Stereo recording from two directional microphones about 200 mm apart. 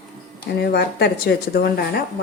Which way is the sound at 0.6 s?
50° left (ahead or behind).